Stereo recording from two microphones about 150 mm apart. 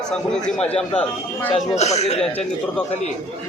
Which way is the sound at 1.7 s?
50° left (ahead or behind).